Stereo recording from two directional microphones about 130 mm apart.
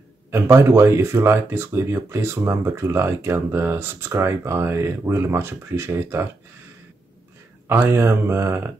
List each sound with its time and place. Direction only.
0.3 s speech: 20° right (ahead or behind)
7.6 s speech: 20° right (ahead or behind)